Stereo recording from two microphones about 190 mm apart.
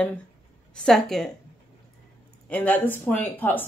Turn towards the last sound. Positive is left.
turn(degrees=10)  # may be behind; listen again after turning